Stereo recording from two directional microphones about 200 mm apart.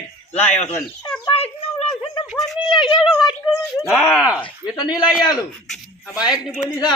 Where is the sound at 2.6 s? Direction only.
25° left (ahead or behind).